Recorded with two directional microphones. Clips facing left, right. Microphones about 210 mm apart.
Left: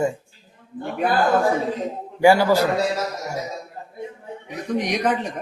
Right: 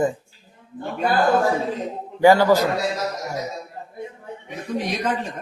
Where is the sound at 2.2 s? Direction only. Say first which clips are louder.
Right 1 dB; 10° left (ahead or behind).